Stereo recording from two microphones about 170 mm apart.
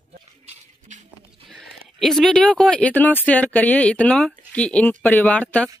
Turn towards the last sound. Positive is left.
turn(degrees=10)  # may be behind; listen again after turning